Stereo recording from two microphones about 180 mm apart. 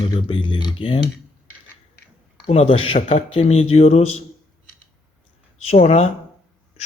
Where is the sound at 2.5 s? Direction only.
35° left (ahead or behind).